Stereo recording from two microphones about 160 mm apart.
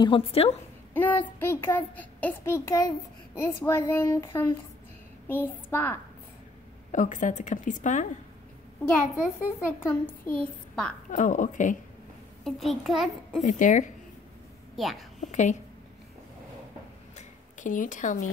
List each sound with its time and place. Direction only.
0.0 s a woman's voice: 35° left (ahead or behind)
0.9 s a child's voice: 10° left (ahead or behind)
6.9 s a woman's voice: 50° left (ahead or behind)
9.8 s a child's voice: 10° left (ahead or behind)
11.1 s a woman's voice: 50° left (ahead or behind)
12.4 s a child's voice: centre (ahead or behind)
13.4 s a woman's voice: 50° left (ahead or behind)
14.8 s a child's voice: centre (ahead or behind)
15.1 s a woman's voice: 50° left (ahead or behind)
17.1 s a sound: 55° left (ahead or behind)